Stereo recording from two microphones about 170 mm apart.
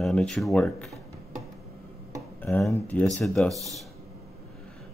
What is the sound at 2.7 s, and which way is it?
Speech, 10° left (ahead or behind).